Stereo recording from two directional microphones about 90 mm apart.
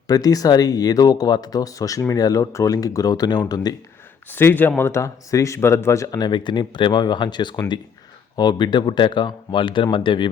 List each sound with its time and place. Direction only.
0.1 s speech: 40° left (ahead or behind)
4.3 s speech: 25° left (ahead or behind)
6.1 s speech: 50° left (ahead or behind); by 10.2 s 65° left (ahead or behind)